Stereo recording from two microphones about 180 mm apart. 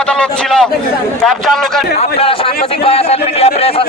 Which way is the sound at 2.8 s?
35° left (ahead or behind).